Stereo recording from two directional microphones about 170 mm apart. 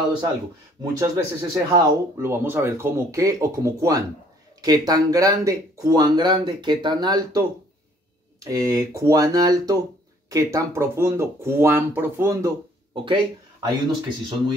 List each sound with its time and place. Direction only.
0.9 s speech: 20° right (ahead or behind)
8.5 s speech: 20° right (ahead or behind)